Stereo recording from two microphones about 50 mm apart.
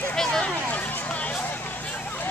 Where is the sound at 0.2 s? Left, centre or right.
Centre.